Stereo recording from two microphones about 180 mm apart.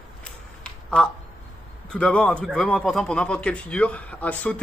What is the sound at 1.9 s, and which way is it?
A man's voice, 5° left (ahead or behind).